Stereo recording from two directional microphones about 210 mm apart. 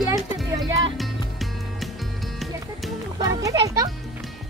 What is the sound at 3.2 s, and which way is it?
Speech, 15° right (ahead or behind).